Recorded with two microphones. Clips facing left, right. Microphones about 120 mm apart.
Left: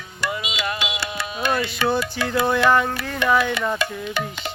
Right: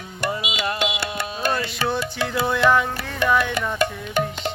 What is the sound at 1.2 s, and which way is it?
Music, 35° right (ahead or behind).